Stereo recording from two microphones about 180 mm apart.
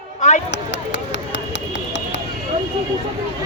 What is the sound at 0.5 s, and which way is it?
Run, 80° left.